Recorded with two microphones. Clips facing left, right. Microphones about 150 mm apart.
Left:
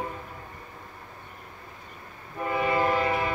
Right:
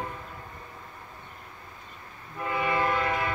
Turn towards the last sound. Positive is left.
turn(degrees=25)  # may be behind; listen again after turning